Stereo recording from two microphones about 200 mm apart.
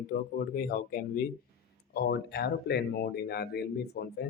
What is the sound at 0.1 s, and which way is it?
Speech, 45° left (ahead or behind).